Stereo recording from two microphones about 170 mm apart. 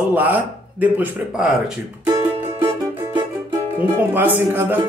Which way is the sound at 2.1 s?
20° right (ahead or behind).